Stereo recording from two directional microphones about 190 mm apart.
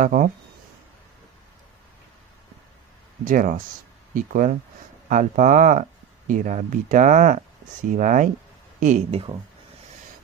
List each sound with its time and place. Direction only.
0.0 s speech: 45° right (ahead or behind)
3.3 s speech: 45° right (ahead or behind)